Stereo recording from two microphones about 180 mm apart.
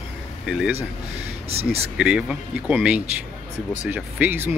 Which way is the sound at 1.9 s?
5° right (ahead or behind).